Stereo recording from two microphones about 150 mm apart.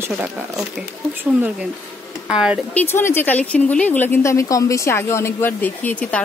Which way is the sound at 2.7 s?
15° left (ahead or behind).